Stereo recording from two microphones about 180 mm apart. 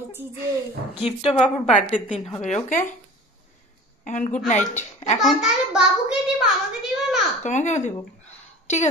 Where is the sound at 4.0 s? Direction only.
45° left (ahead or behind).